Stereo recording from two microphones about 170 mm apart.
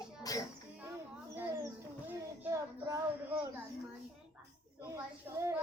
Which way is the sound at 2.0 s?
10° right (ahead or behind).